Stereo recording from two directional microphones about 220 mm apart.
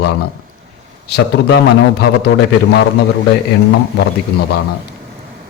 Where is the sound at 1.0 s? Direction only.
50° left (ahead or behind).